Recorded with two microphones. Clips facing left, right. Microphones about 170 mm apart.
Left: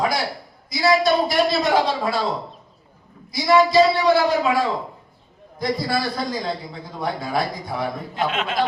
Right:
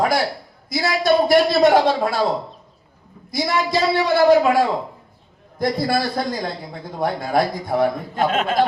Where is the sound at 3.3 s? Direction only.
50° right (ahead or behind).